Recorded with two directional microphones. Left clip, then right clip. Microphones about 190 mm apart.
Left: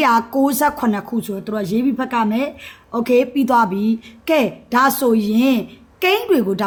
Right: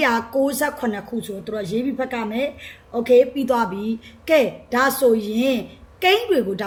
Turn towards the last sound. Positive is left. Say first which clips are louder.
# left 2 dB
turn(degrees=45)  # may be behind; listen again after turning